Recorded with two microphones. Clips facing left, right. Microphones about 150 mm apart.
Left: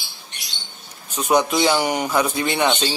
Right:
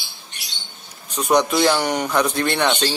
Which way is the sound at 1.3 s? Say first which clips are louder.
Right 1 dB; 5° left (ahead or behind).